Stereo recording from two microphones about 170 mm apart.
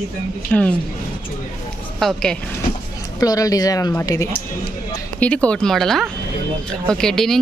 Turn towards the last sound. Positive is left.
turn(degrees=5)  # may be behind; listen again after turning